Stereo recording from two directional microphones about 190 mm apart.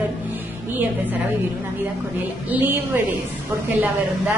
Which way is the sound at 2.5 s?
10° right (ahead or behind).